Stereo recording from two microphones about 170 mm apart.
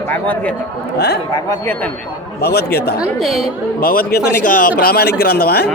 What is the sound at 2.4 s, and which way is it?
A man's voice, 70° left (ahead or behind).